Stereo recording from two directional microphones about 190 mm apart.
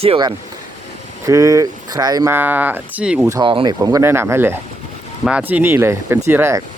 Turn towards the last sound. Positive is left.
turn(degrees=-15)  # may be behind; listen again after turning